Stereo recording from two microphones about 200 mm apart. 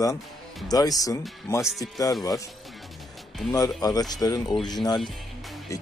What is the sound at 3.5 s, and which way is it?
Speech, 20° left (ahead or behind).